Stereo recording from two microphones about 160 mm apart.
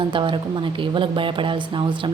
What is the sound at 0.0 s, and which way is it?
A woman's voice, 30° right (ahead or behind).